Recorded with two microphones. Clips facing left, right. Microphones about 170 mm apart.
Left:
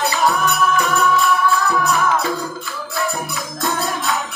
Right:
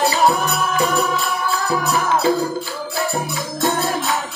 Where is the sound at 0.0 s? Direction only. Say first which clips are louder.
Right 2 dB; 30° right (ahead or behind).